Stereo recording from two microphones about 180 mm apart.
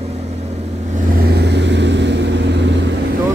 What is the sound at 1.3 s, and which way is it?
Vehicle, 70° right (ahead or behind).